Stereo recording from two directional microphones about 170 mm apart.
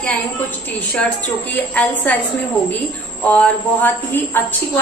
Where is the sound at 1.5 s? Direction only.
10° left (ahead or behind).